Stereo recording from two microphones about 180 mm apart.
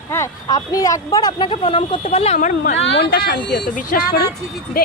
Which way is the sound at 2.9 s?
60° left (ahead or behind).